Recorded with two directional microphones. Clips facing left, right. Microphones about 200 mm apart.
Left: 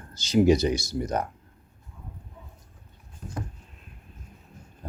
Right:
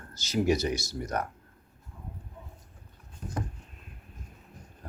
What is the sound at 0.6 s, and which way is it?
Speech, 15° left (ahead or behind).